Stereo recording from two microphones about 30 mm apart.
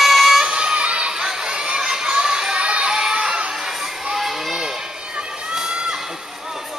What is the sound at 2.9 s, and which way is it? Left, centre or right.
Crowd, right.